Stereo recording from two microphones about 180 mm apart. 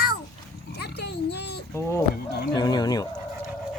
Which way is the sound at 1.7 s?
15° left (ahead or behind).